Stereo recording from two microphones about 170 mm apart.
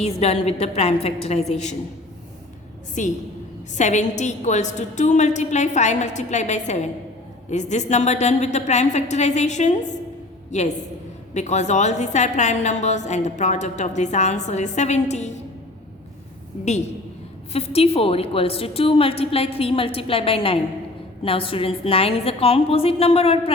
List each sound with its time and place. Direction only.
0.0 s a woman's voice: 40° left (ahead or behind)
3.0 s a woman's voice: 45° left (ahead or behind)
17.5 s a woman's voice: 35° left (ahead or behind)